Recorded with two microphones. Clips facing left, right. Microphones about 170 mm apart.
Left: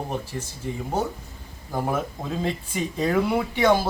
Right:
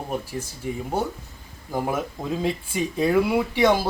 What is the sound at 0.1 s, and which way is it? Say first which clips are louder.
Speech: right 1 dB; 10° right (ahead or behind).